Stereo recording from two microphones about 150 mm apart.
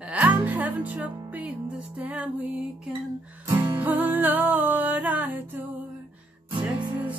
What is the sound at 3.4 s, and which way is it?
Music, 20° right (ahead or behind).